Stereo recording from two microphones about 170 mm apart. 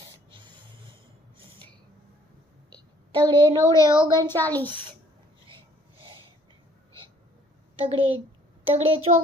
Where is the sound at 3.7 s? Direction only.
20° left (ahead or behind).